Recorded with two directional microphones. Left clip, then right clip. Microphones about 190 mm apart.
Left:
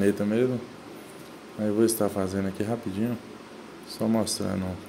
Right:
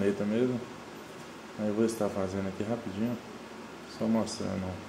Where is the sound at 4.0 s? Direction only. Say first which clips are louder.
Left 4 dB; 45° left (ahead or behind).